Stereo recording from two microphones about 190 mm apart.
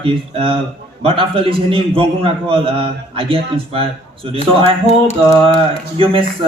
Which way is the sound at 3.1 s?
30° right (ahead or behind).